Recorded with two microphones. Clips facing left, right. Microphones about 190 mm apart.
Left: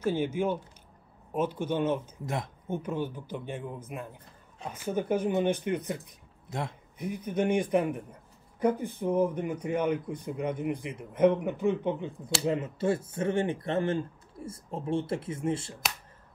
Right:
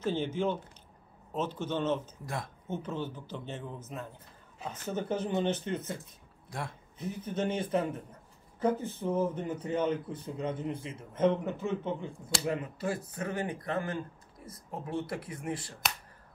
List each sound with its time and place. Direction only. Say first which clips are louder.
0.0 s speech: left 3 dB; 10° left (ahead or behind); by 15.7 s 25° left (ahead or behind)